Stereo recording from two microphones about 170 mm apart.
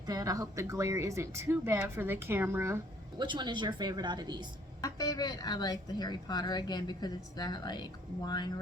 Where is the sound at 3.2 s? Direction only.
25° right (ahead or behind).